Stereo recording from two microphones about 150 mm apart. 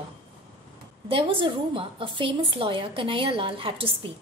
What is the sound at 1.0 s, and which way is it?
A woman's voice, 40° right (ahead or behind).